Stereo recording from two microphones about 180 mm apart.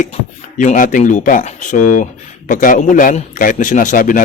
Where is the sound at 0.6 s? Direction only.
45° left (ahead or behind).